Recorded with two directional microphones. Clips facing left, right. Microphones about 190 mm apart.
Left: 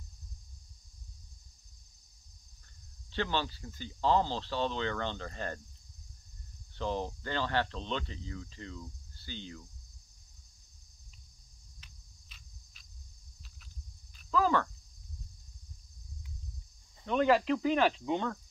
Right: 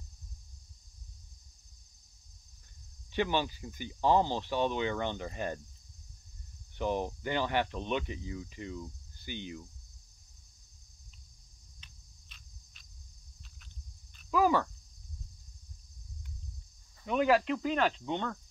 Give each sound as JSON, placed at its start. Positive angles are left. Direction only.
{"t": 3.1, "sound": "speech", "side_deg": -15}
{"t": 6.8, "sound": "speech", "side_deg": -15}
{"t": 11.8, "sound": "cricket", "side_deg": 0}
{"t": 14.3, "sound": "a sound", "side_deg": -10}
{"t": 17.0, "sound": "speech", "side_deg": -5}